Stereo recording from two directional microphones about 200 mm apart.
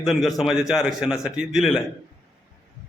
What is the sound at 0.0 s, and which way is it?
A man's voice, centre (ahead or behind).